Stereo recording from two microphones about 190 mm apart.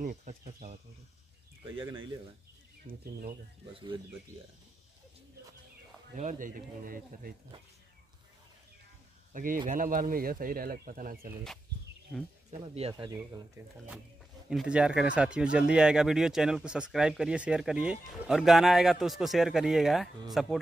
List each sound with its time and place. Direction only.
0.0 s speech: 45° right (ahead or behind)
1.8 s speech: 25° right (ahead or behind)
2.9 s speech: 50° right (ahead or behind)
3.7 s speech: 25° right (ahead or behind)
6.1 s speech: 40° right (ahead or behind)
9.3 s speech: 45° right (ahead or behind)
12.4 s speech: 35° right (ahead or behind)
13.2 s speech: 10° right (ahead or behind)